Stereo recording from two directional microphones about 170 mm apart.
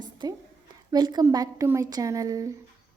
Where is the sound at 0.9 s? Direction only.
25° right (ahead or behind).